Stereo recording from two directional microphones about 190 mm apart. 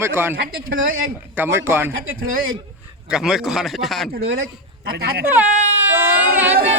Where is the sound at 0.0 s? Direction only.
10° right (ahead or behind).